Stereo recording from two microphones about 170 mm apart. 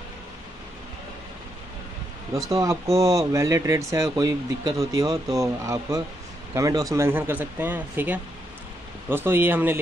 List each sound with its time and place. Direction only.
2.4 s speech: 20° right (ahead or behind)